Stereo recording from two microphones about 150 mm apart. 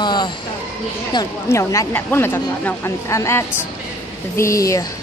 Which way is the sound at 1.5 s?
20° left (ahead or behind).